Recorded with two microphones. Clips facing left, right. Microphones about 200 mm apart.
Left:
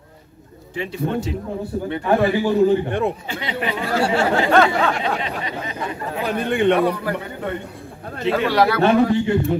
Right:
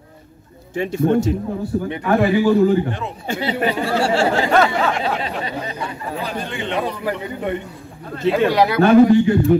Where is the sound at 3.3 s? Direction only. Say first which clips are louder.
Right 5 dB; 35° right (ahead or behind).